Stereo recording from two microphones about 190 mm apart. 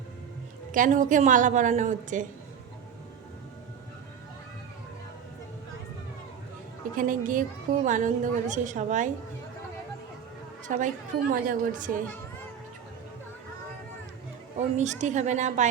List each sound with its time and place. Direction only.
0.7 s a woman's voice: 45° right (ahead or behind)
6.9 s a woman's voice: 45° right (ahead or behind)
10.7 s a woman's voice: 45° right (ahead or behind)
14.8 s a woman's voice: 40° right (ahead or behind)